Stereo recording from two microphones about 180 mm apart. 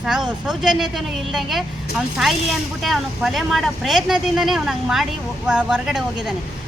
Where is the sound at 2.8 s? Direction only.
Centre (ahead or behind).